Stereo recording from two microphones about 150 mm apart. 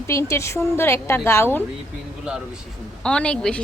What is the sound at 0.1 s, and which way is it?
A woman's voice, 20° left (ahead or behind).